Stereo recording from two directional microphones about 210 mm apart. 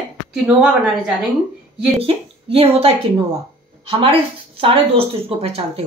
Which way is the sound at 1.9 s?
25° right (ahead or behind).